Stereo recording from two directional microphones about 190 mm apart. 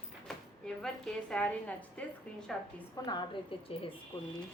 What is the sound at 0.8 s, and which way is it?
A woman's voice, 5° left (ahead or behind).